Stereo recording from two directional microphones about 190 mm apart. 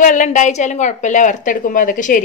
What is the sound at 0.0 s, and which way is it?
A woman's voice, 40° left (ahead or behind).